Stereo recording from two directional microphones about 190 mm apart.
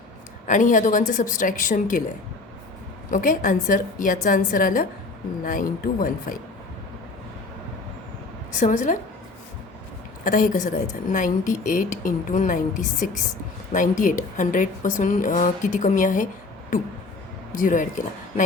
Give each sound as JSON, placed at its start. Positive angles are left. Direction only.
{"t": 0.4, "sound": "speech", "side_deg": 40}
{"t": 3.1, "sound": "speech", "side_deg": 45}
{"t": 8.5, "sound": "a woman's voice", "side_deg": 40}
{"t": 10.2, "sound": "speech", "side_deg": 45}
{"t": 17.5, "sound": "speech", "side_deg": 45}